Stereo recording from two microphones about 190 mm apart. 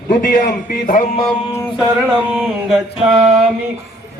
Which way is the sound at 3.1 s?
25° right (ahead or behind).